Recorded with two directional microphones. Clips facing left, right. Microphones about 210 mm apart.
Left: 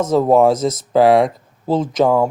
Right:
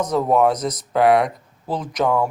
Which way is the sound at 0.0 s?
25° left (ahead or behind).